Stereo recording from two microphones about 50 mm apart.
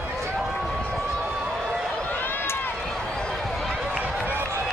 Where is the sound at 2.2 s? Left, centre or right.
Left.